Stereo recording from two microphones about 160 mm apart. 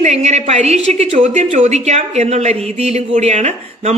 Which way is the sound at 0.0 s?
45° right (ahead or behind).